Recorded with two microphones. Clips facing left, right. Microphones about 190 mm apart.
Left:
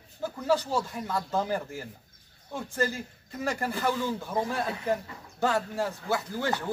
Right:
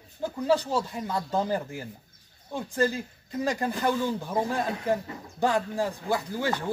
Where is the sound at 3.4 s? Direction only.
15° right (ahead or behind).